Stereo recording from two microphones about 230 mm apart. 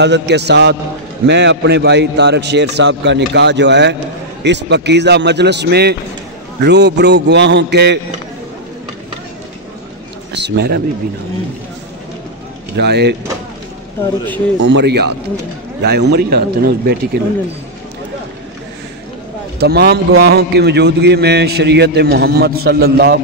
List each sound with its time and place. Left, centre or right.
0.0 s a man's voice: right
10.3 s a man's voice: right
12.7 s a man's voice: right
14.6 s a man's voice: right
19.6 s a man's voice: right